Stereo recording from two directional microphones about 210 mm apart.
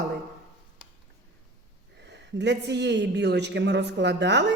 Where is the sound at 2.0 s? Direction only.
55° right (ahead or behind).